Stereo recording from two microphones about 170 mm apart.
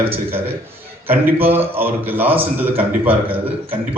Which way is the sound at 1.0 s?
10° right (ahead or behind).